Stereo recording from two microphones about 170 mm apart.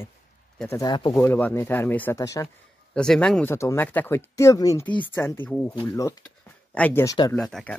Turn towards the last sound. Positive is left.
turn(degrees=5)  # may be behind; listen again after turning